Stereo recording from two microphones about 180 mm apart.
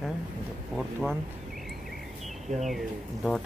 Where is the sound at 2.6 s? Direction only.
Centre (ahead or behind).